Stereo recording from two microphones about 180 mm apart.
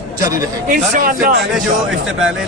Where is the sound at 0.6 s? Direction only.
45° right (ahead or behind).